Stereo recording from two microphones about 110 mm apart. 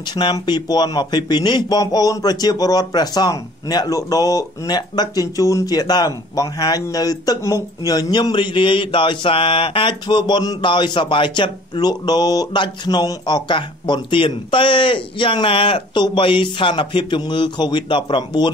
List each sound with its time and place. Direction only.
0.1 s speech: 45° left (ahead or behind)